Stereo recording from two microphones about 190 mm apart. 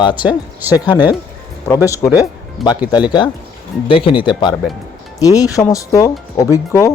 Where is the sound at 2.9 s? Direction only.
20° left (ahead or behind).